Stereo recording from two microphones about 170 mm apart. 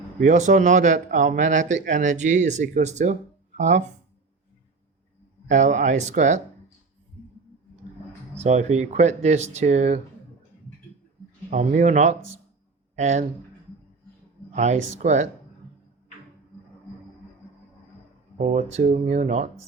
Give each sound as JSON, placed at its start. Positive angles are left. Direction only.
{"t": 0.2, "sound": "speech", "side_deg": -50}
{"t": 5.5, "sound": "speech", "side_deg": -45}
{"t": 8.4, "sound": "speech", "side_deg": -40}
{"t": 11.5, "sound": "speech", "side_deg": -45}
{"t": 14.5, "sound": "speech", "side_deg": -45}
{"t": 18.3, "sound": "speech", "side_deg": -40}